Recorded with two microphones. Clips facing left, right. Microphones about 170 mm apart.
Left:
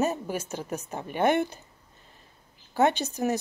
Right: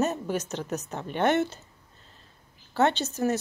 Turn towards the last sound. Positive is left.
turn(degrees=15)  # may be behind; listen again after turning